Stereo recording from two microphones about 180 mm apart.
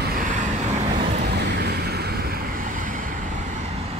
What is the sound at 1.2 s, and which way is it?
Vehicle, 65° right (ahead or behind).